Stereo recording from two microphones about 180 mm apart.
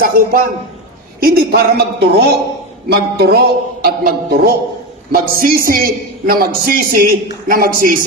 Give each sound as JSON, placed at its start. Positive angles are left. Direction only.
{"t": 0.0, "sound": "a man's voice", "side_deg": -50}